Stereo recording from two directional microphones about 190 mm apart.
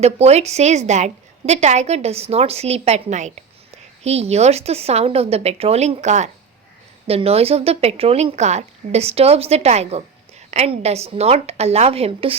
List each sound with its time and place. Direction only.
0.0 s a woman's voice: 35° right (ahead or behind)